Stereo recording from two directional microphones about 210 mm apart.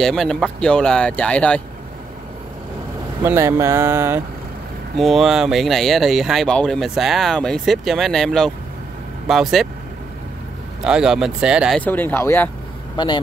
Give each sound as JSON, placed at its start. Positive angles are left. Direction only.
{"t": 0.0, "sound": "speech", "side_deg": 5}
{"t": 3.3, "sound": "speech", "side_deg": -10}
{"t": 4.9, "sound": "speech", "side_deg": 0}
{"t": 10.8, "sound": "speech", "side_deg": -5}
{"t": 11.8, "sound": "speech", "side_deg": 10}
{"t": 12.9, "sound": "speech", "side_deg": 20}